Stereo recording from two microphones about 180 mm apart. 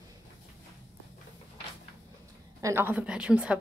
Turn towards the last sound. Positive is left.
turn(degrees=-5)  # may be behind; listen again after turning